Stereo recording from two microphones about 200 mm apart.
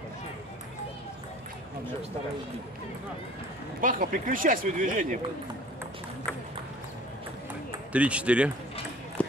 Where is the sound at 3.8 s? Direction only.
45° right (ahead or behind).